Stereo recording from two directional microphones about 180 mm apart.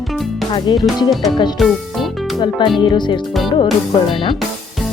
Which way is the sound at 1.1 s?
Centre (ahead or behind).